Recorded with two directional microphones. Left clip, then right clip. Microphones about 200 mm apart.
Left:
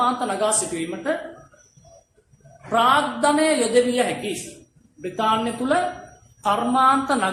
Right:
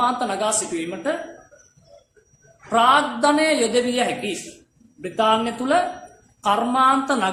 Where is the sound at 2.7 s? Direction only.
30° right (ahead or behind).